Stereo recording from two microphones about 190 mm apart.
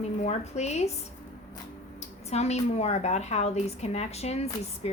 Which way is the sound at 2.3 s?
35° left (ahead or behind).